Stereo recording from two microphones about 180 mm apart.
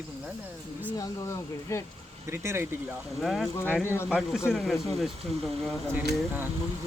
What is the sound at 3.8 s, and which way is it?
Speech, 15° left (ahead or behind).